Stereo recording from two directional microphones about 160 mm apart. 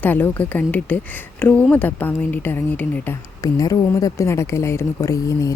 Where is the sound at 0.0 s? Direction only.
10° left (ahead or behind).